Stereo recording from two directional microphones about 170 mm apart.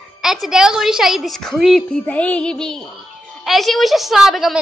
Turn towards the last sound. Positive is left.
turn(degrees=0)  # may be behind; listen again after turning